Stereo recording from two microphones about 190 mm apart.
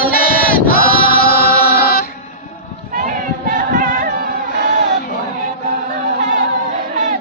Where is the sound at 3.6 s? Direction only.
45° right (ahead or behind).